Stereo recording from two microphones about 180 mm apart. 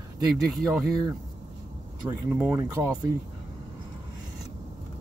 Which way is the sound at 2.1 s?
10° right (ahead or behind).